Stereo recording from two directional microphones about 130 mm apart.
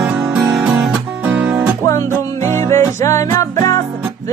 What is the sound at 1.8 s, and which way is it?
Music, 20° left (ahead or behind).